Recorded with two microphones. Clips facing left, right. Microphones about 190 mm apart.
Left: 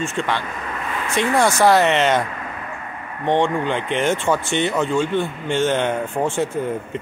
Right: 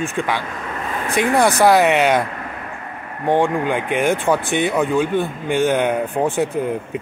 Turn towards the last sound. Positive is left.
turn(degrees=-15)  # may be behind; listen again after turning